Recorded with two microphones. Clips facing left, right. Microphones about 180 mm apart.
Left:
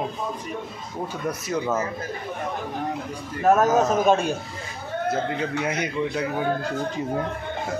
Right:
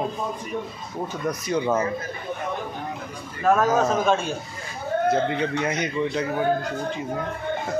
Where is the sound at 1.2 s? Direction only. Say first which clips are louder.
Right 2 dB; 5° left (ahead or behind).